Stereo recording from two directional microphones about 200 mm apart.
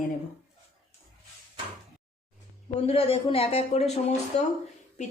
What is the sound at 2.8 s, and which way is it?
Speech, 30° left (ahead or behind).